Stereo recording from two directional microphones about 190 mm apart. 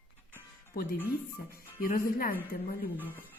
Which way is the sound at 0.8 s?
55° left (ahead or behind).